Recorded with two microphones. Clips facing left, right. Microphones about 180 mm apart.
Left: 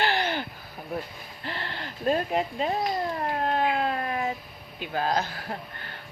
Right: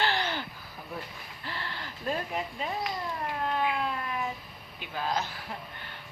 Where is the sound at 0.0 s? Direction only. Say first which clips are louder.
Left 4 dB; 15° left (ahead or behind).